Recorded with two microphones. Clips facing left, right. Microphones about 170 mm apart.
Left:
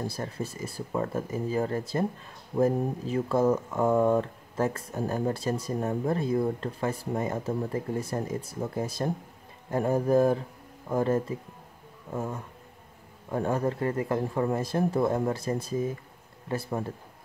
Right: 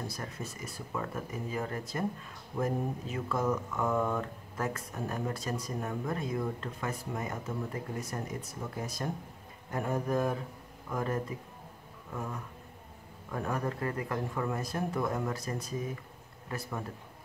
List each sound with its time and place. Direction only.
0.0 s speech: 30° left (ahead or behind)